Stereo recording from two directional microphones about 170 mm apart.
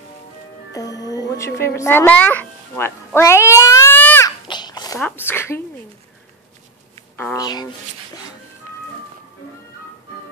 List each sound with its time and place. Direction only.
0.7 s a woman's voice: 20° left (ahead or behind)
4.5 s babbling: 25° left (ahead or behind)
4.9 s a woman's voice: 10° left (ahead or behind)
7.3 s speech: 25° left (ahead or behind)